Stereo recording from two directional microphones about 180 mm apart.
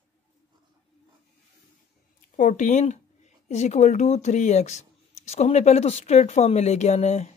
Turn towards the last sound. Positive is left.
turn(degrees=35)  # may be behind; listen again after turning